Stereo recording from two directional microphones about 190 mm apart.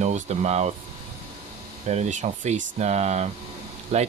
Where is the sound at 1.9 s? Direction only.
40° right (ahead or behind).